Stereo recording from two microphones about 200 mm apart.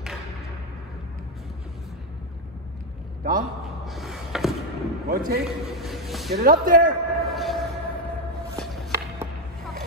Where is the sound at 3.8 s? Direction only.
Centre (ahead or behind).